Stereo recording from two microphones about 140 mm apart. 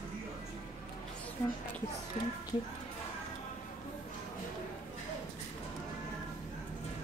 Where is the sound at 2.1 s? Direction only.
55° left (ahead or behind).